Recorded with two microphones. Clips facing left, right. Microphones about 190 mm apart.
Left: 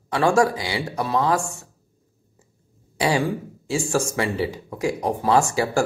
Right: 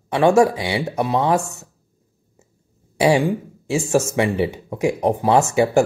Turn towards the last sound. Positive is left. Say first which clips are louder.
# right 4 dB
turn(degrees=-20)  # may be behind; listen again after turning